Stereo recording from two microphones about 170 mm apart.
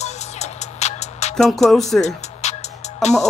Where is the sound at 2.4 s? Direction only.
40° left (ahead or behind).